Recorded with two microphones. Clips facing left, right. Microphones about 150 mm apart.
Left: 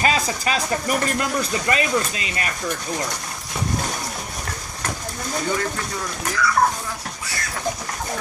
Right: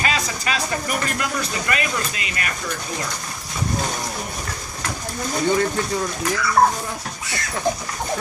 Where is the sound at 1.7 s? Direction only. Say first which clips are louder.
Left 5 dB; 30° left (ahead or behind).